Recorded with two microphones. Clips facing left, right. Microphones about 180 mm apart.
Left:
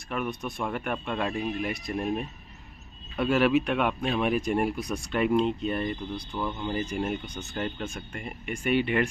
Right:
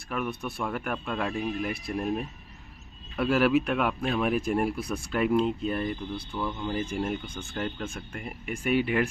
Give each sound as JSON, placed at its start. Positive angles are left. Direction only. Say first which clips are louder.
{"t": 0.1, "sound": "speech", "louder": "even", "side_deg": 0}
{"t": 6.1, "sound": "speech", "louder": "even", "side_deg": 15}
{"t": 6.5, "sound": "speech", "louder": "even", "side_deg": 0}